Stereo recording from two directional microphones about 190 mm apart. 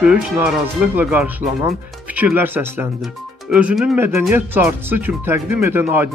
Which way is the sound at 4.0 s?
15° right (ahead or behind).